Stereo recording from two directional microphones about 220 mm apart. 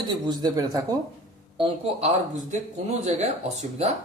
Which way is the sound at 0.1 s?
20° right (ahead or behind).